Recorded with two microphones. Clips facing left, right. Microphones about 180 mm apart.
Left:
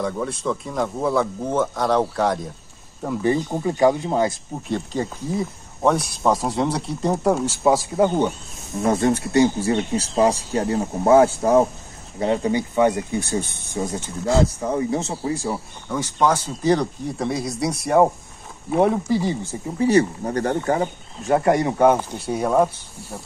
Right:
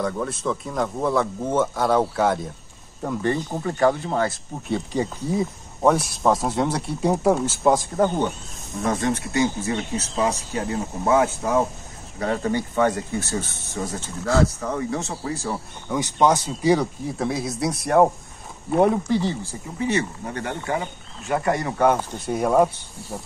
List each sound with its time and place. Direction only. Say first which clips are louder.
0.0 s speech: left 1 dB; centre (ahead or behind); by 4.4 s 15° left (ahead or behind)
4.6 s speech: right 1 dB; 5° right (ahead or behind)
8.8 s speech: left 4 dB; 30° left (ahead or behind)
12.2 s speech: left 3 dB; 20° left (ahead or behind)
15.9 s speech: right 1 dB; 20° right (ahead or behind)
16.7 s speech: even; 5° right (ahead or behind)
19.8 s speech: left 7 dB; 35° left (ahead or behind)
21.4 s speech: left 4 dB; 25° left (ahead or behind)
21.8 s speech: left 2 dB; 10° left (ahead or behind)